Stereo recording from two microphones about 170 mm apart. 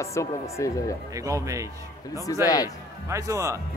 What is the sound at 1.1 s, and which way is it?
Speech, 20° right (ahead or behind).